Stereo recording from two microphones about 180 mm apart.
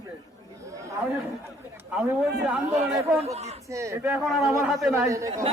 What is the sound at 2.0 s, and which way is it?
Speech, 5° right (ahead or behind).